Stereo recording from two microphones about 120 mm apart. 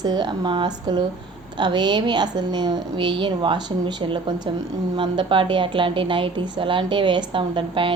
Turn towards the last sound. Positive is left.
turn(degrees=-45)  # may be behind; listen again after turning